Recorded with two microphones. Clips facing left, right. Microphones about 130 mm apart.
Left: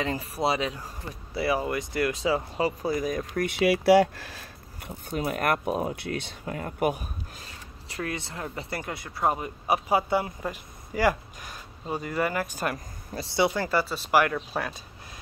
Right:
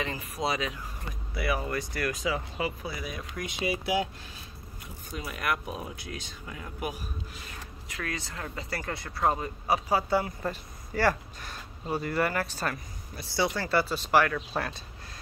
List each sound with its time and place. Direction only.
0.0 s speech: 30° left (ahead or behind); by 4.9 s 75° left (ahead or behind)
5.1 s speech: 50° left (ahead or behind)
7.9 s speech: 25° left (ahead or behind)
13.8 s speech: 5° left (ahead or behind)